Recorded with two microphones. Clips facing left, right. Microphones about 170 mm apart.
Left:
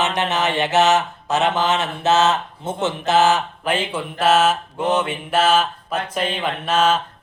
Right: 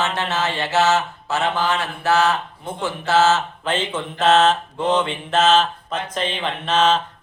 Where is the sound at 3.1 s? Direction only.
15° left (ahead or behind).